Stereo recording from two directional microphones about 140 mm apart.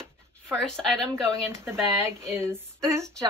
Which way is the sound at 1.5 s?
20° right (ahead or behind).